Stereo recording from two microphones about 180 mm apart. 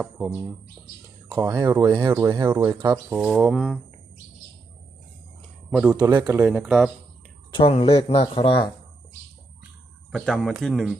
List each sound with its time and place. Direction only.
0.0 s speech: 5° right (ahead or behind)
1.3 s speech: 20° right (ahead or behind)
1.9 s speech: 25° right (ahead or behind)
2.5 s speech: 10° right (ahead or behind)
3.2 s speech: 10° right (ahead or behind)
5.7 s speech: 5° right (ahead or behind)
6.0 s speech: 25° right (ahead or behind)
6.3 s speech: 10° right (ahead or behind)
7.5 s speech: 30° left (ahead or behind)
10.1 s speech: centre (ahead or behind)